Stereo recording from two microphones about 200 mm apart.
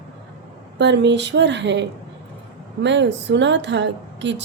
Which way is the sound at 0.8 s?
60° right (ahead or behind).